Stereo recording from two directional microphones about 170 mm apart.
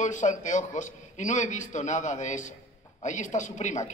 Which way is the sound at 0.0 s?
45° left (ahead or behind).